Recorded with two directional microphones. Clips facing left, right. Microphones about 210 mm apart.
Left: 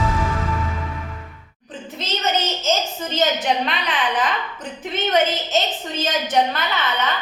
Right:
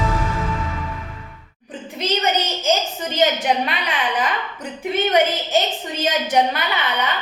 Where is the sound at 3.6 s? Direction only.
10° right (ahead or behind).